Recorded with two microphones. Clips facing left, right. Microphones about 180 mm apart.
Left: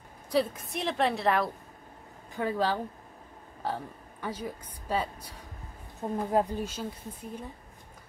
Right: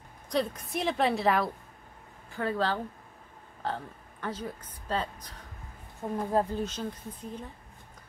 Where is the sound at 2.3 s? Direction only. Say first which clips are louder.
Left 1 dB; 15° left (ahead or behind).